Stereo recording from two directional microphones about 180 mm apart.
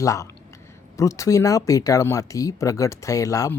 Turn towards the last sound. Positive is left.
turn(degrees=20)  # may be behind; listen again after turning